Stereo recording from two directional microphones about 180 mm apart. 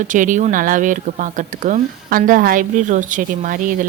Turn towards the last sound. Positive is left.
turn(degrees=-45)  # may be behind; listen again after turning